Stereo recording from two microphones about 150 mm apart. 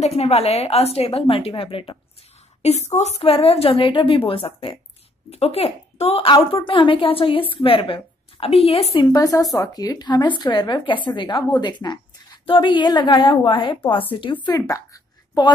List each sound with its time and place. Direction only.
0.0 s a woman's voice: 45° left (ahead or behind)
8.9 s a woman's voice: 25° left (ahead or behind)